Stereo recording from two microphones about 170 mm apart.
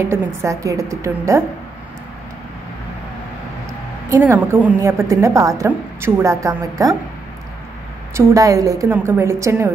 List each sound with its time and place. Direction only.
0.0 s a woman's voice: 15° right (ahead or behind)
4.1 s a woman's voice: 15° right (ahead or behind)
8.1 s a woman's voice: 20° right (ahead or behind)